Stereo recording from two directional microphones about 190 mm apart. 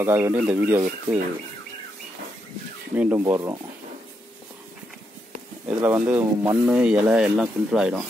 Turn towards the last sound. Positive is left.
turn(degrees=-5)  # may be behind; listen again after turning